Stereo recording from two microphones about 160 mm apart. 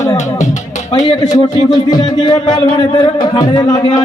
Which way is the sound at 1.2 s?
25° left (ahead or behind).